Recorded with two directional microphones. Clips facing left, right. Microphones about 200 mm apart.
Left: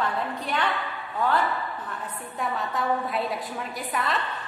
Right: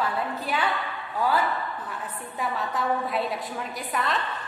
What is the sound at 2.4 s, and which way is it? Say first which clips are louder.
A woman's voice: even; centre (ahead or behind).